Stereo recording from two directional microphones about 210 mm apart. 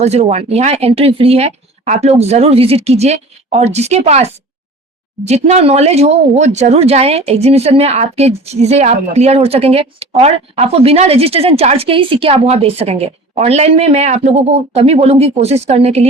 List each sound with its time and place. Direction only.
0.0 s speech: 30° right (ahead or behind)